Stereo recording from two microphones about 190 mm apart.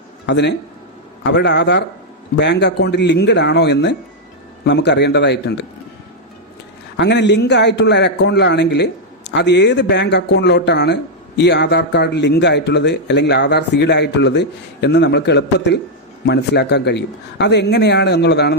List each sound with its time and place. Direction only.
0.3 s a man's voice: 65° left (ahead or behind)
6.9 s a man's voice: 65° left (ahead or behind)